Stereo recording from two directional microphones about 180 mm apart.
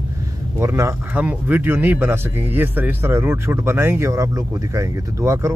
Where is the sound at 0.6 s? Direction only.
15° right (ahead or behind).